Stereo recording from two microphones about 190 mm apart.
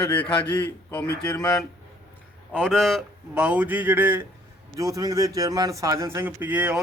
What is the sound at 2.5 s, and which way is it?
A man's voice, 5° left (ahead or behind).